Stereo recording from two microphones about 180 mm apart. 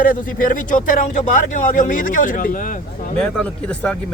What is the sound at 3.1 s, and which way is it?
Speech, 5° left (ahead or behind).